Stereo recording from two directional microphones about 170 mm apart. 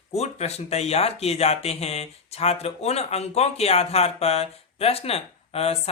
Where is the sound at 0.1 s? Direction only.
40° left (ahead or behind).